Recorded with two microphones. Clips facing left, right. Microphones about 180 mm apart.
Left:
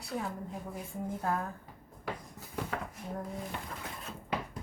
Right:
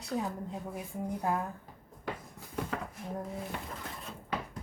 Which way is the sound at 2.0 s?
5° left (ahead or behind).